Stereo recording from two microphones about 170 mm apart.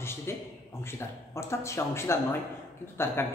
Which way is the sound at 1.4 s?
15° left (ahead or behind).